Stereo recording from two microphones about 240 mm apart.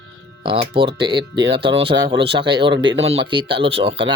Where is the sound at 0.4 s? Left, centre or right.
Right.